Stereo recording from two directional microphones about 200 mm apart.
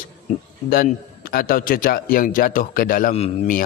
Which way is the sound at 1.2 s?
45° left (ahead or behind).